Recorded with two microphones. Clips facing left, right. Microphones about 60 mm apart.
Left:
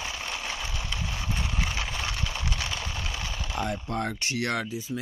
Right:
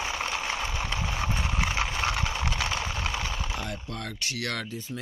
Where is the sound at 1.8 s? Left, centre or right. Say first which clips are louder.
Right 5 dB; right.